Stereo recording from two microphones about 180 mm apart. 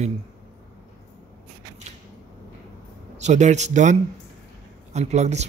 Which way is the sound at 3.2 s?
40° right (ahead or behind).